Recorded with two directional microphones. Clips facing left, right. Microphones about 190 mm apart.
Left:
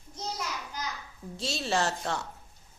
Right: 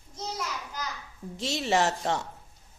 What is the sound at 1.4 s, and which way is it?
Speech, 20° right (ahead or behind).